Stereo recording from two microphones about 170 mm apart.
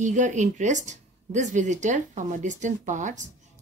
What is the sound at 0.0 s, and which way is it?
Speech, 45° right (ahead or behind).